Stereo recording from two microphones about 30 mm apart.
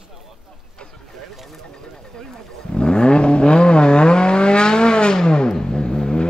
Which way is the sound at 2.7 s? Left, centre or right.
Left.